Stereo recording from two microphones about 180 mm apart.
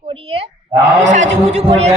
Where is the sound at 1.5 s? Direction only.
40° right (ahead or behind).